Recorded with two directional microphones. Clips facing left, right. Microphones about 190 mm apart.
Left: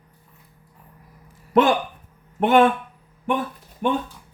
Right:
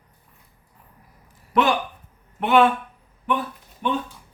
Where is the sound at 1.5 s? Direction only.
50° left (ahead or behind).